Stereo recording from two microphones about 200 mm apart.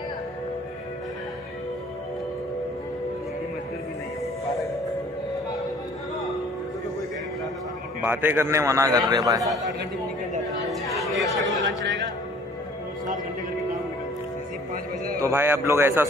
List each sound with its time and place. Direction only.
8.0 s a man's voice: 10° right (ahead or behind)
10.7 s chatter: centre (ahead or behind)
15.1 s a man's voice: 15° right (ahead or behind)